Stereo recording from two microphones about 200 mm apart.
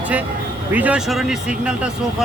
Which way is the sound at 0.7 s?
5° right (ahead or behind).